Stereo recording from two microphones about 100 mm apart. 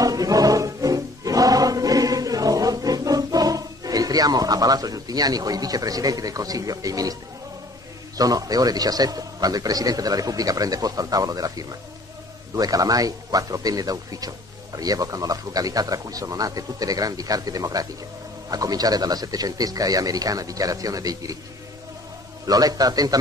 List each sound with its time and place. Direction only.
0.0 s music: 35° right (ahead or behind)
8.2 s a man's voice: 40° right (ahead or behind)
22.5 s a man's voice: 40° right (ahead or behind)